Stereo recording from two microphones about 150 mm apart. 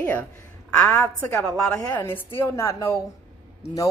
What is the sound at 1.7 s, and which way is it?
Speech, 25° left (ahead or behind).